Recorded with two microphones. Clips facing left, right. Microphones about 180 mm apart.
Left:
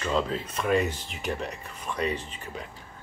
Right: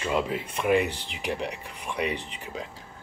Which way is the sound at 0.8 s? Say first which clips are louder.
Even; 75° right (ahead or behind).